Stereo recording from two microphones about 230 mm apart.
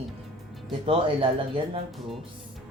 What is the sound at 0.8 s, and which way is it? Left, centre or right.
Speech, right.